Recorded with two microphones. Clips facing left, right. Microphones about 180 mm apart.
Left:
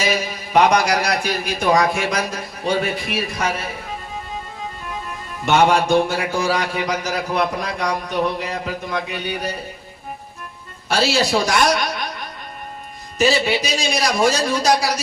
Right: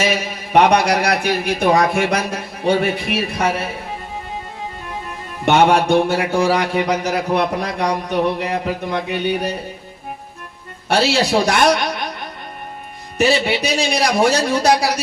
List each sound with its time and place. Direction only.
0.0 s a man's voice: 65° right (ahead or behind)
5.5 s a man's voice: 60° right (ahead or behind)
10.8 s a man's voice: 60° right (ahead or behind)
13.1 s a man's voice: 60° right (ahead or behind)